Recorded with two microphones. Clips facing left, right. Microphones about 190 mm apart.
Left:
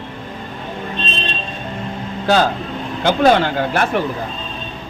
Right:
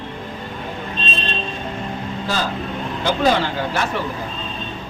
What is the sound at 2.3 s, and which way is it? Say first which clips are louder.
Speech: left 10 dB; 70° left (ahead or behind).